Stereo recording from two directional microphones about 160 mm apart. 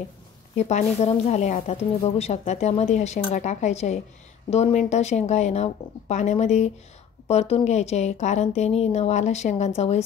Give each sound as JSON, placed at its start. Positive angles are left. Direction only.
{"t": 0.6, "sound": "a woman's voice", "side_deg": 45}